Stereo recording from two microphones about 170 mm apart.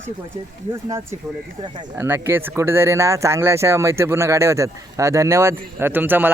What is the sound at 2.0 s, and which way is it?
Speech, 15° right (ahead or behind).